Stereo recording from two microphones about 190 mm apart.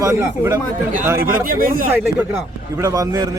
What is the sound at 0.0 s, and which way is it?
Speech, 15° right (ahead or behind).